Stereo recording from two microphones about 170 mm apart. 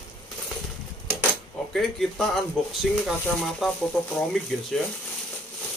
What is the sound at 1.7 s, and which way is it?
Speech, centre (ahead or behind).